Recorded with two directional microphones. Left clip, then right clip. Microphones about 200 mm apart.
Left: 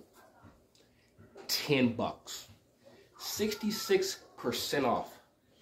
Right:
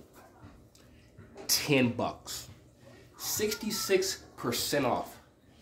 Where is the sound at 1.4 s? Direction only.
15° right (ahead or behind).